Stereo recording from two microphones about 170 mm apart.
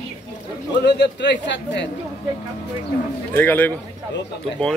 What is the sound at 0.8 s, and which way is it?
A man's voice, 90° left.